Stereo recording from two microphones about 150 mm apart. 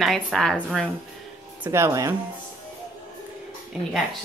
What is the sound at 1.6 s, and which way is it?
Speech, 15° right (ahead or behind).